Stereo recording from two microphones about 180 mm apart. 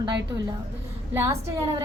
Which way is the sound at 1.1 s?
15° right (ahead or behind).